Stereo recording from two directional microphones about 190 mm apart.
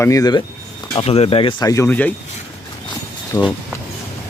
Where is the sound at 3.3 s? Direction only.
15° left (ahead or behind).